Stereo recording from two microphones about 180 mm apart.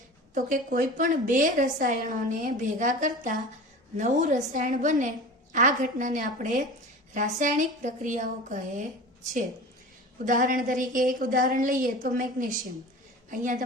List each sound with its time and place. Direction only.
0.3 s a woman's voice: 50° right (ahead or behind)
10.2 s a woman's voice: 45° right (ahead or behind)